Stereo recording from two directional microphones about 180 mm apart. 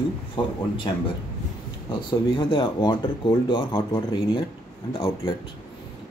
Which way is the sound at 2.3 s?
25° left (ahead or behind).